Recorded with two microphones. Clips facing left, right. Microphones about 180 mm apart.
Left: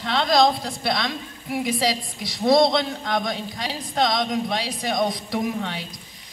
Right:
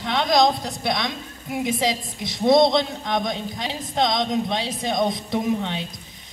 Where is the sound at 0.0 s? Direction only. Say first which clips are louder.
Even; 15° right (ahead or behind).